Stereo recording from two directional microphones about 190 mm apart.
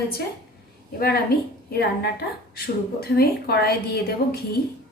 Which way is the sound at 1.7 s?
55° left (ahead or behind).